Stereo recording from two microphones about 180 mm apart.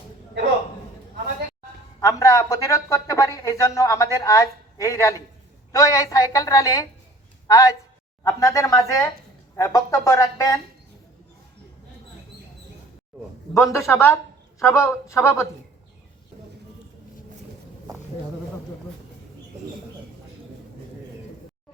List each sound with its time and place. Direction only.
2.0 s a woman's voice: 20° left (ahead or behind)
13.5 s speech: 15° left (ahead or behind)